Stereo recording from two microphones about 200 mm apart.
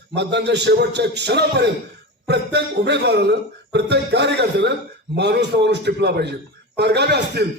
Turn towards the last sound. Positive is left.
turn(degrees=-55)  # may be behind; listen again after turning